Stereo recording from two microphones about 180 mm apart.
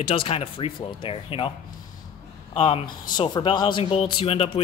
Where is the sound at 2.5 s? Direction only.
30° left (ahead or behind).